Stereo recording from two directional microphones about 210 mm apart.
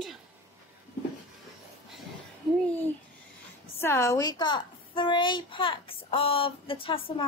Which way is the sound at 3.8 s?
15° left (ahead or behind).